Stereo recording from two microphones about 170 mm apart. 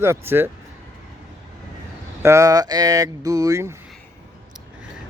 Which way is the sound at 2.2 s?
20° right (ahead or behind).